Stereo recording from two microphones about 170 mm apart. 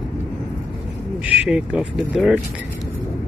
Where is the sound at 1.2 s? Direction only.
10° right (ahead or behind).